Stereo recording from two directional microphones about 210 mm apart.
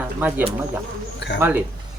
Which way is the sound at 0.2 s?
5° right (ahead or behind).